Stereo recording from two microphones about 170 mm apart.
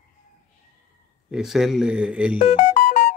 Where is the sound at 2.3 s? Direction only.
45° left (ahead or behind).